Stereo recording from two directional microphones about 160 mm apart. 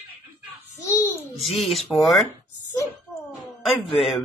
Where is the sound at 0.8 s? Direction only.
20° left (ahead or behind).